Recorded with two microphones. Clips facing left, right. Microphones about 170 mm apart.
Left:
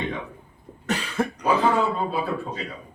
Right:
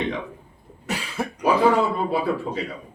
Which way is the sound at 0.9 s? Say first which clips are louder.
Left 3 dB; 10° right (ahead or behind).